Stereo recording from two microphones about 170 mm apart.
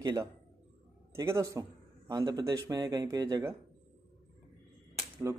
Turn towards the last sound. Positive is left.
turn(degrees=-15)  # may be behind; listen again after turning